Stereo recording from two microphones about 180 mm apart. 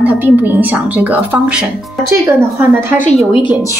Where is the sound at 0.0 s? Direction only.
10° right (ahead or behind).